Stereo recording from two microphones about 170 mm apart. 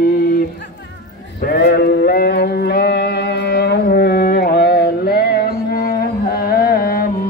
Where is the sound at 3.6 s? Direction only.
70° left (ahead or behind).